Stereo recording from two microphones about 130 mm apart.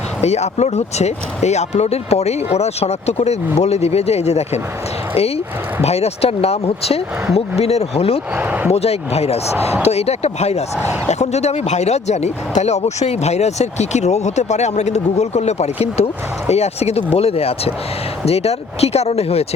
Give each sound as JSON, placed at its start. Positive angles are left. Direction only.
{"t": 0.2, "sound": "speech", "side_deg": 60}
{"t": 5.8, "sound": "speech", "side_deg": 55}
{"t": 8.4, "sound": "speech", "side_deg": -10}
{"t": 8.7, "sound": "speech", "side_deg": 55}